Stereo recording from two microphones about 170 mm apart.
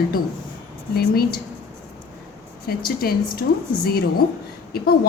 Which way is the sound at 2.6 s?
60° left (ahead or behind).